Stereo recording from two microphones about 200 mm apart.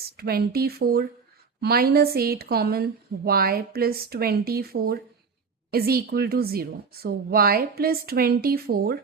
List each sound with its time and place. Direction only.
0.0 s a woman's voice: 50° right (ahead or behind)